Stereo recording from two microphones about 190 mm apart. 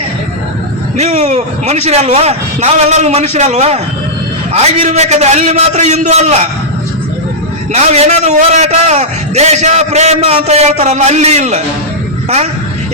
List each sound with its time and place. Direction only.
0.9 s a man's voice: 35° right (ahead or behind)
7.7 s a man's voice: 35° right (ahead or behind)